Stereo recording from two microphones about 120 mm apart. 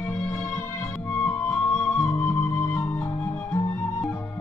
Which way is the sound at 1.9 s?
20° left (ahead or behind).